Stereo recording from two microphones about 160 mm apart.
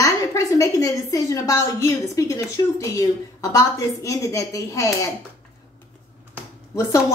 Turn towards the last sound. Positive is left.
turn(degrees=20)  # may be behind; listen again after turning